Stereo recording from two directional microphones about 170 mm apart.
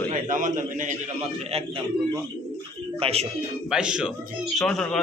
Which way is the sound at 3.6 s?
5° right (ahead or behind).